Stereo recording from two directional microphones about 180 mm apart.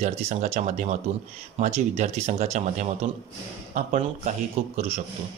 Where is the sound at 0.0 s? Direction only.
40° right (ahead or behind).